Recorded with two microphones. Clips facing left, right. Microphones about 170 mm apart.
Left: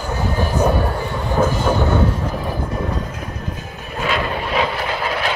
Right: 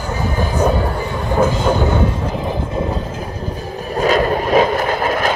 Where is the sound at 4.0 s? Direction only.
40° right (ahead or behind).